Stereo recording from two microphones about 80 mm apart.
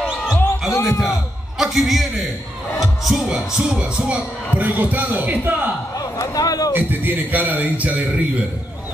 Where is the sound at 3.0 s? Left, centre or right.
Centre.